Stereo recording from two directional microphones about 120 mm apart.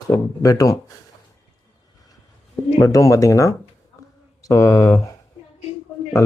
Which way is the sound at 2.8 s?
25° left (ahead or behind).